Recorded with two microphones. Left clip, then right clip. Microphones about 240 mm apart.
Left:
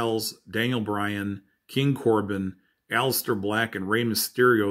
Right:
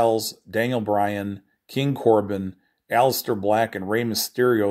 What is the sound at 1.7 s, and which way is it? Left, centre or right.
Speech, centre.